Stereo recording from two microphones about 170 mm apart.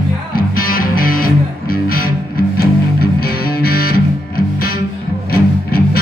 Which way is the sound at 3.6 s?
65° left (ahead or behind).